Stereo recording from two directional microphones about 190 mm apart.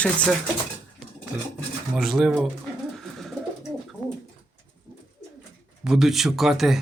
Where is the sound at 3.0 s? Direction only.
Centre (ahead or behind).